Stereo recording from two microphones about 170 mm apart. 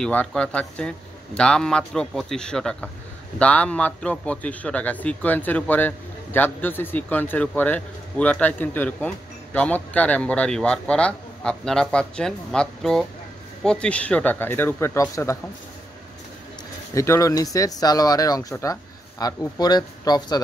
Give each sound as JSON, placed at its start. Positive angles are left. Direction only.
{"t": 0.0, "sound": "a man's voice", "side_deg": 5}
{"t": 16.9, "sound": "speech", "side_deg": 15}